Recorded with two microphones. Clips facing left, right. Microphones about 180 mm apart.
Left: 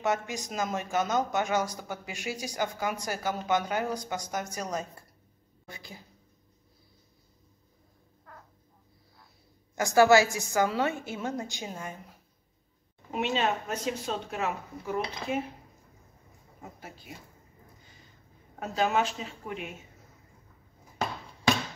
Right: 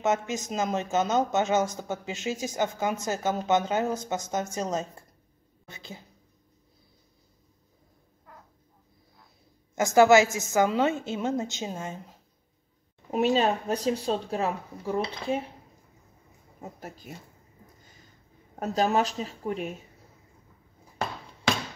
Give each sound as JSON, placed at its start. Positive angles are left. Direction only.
{"t": 0.0, "sound": "speech", "side_deg": -20}
{"t": 9.8, "sound": "speech", "side_deg": -20}
{"t": 13.1, "sound": "speech", "side_deg": -40}
{"t": 18.6, "sound": "speech", "side_deg": -40}